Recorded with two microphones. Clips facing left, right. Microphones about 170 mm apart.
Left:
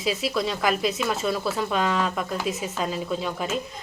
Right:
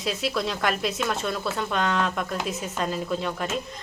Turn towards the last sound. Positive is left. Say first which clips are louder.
# even
turn(degrees=0)  # may be behind; listen again after turning